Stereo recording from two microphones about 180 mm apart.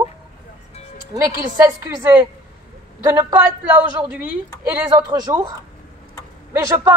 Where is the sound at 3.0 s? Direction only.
10° right (ahead or behind).